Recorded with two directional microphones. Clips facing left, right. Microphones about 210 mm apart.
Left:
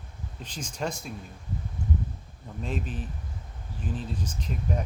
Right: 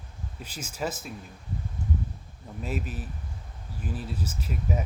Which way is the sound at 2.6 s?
5° right (ahead or behind).